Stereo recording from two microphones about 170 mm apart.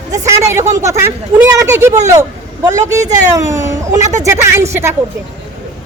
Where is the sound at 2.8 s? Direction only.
45° right (ahead or behind).